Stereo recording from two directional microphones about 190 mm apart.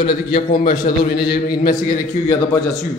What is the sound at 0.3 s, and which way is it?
A man's voice, 50° left (ahead or behind).